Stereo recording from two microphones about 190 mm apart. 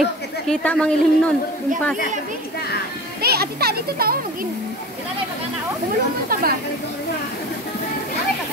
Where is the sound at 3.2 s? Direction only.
55° right (ahead or behind).